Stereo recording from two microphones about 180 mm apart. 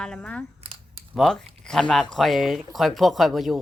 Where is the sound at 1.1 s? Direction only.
5° left (ahead or behind).